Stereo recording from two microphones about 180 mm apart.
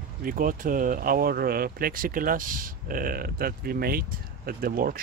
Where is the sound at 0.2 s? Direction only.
50° right (ahead or behind).